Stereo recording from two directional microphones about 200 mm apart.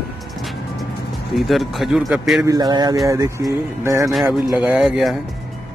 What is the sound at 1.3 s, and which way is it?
Speech, centre (ahead or behind).